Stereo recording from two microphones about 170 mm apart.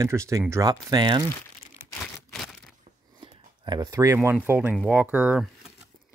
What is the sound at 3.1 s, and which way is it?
Speech, 25° right (ahead or behind).